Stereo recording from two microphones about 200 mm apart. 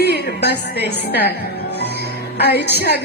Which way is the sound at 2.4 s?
55° left (ahead or behind).